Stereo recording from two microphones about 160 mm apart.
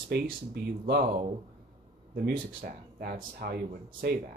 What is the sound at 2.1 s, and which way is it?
Speech, 65° right (ahead or behind).